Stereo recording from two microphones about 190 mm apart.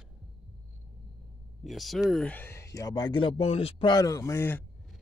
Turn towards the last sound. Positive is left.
turn(degrees=10)  # may be behind; listen again after turning